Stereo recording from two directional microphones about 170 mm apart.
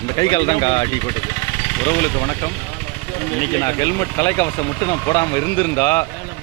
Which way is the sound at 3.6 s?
20° left (ahead or behind).